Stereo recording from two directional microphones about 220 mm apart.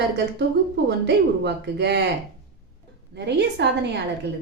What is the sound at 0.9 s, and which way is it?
A woman's voice, 50° right (ahead or behind).